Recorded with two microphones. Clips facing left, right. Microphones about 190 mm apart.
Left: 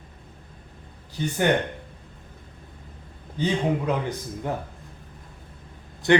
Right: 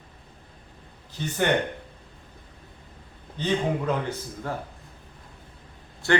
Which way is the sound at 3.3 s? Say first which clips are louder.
Left 1 dB; 10° left (ahead or behind).